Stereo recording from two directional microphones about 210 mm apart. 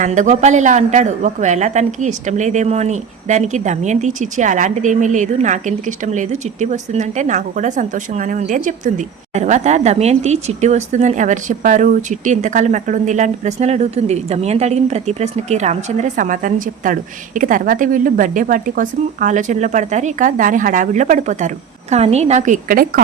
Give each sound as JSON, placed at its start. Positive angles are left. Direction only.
{"t": 0.0, "sound": "speech", "side_deg": -35}